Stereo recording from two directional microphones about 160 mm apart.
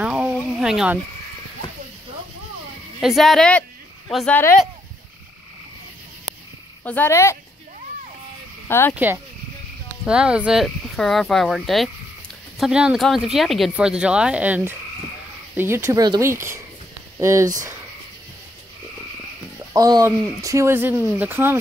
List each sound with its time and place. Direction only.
0.0 s a sound: 5° right (ahead or behind)
0.5 s frog: 5° right (ahead or behind)
3.0 s speech: centre (ahead or behind)
6.8 s speech: 10° left (ahead or behind)
8.6 s speech: 15° left (ahead or behind)
8.9 s speech: 15° right (ahead or behind)
19.7 s speech: 20° right (ahead or behind)